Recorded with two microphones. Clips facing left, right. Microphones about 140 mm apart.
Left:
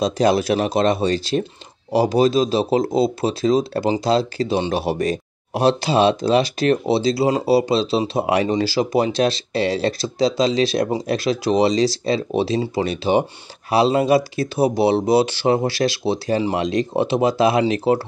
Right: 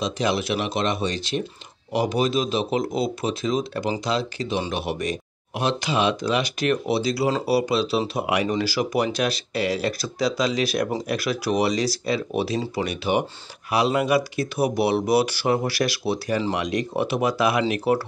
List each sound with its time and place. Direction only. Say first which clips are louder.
0.0 s speech: left 7 dB; 35° left (ahead or behind)